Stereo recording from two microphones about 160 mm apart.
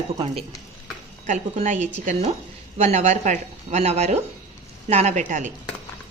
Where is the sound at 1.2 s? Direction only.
45° right (ahead or behind).